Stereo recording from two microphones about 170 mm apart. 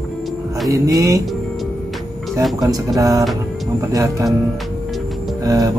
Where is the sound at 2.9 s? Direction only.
20° right (ahead or behind).